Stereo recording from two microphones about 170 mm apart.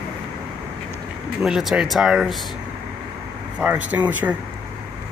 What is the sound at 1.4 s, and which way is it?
Speech, centre (ahead or behind).